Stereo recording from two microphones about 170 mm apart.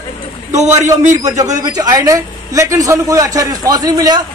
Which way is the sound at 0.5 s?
40° right (ahead or behind).